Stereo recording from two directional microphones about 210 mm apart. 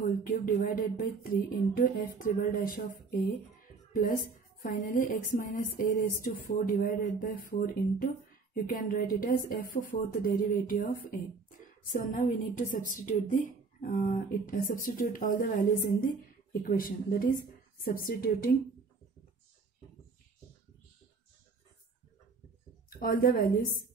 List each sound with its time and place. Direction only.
0.0 s a woman's voice: 40° left (ahead or behind)
22.9 s speech: 45° left (ahead or behind)